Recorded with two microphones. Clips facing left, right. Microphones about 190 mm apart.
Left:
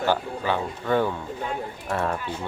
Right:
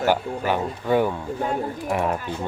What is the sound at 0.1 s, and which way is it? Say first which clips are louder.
Speech: right 2 dB; 15° right (ahead or behind).